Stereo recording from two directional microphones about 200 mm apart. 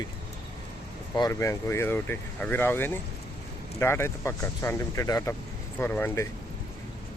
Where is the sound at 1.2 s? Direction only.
15° left (ahead or behind).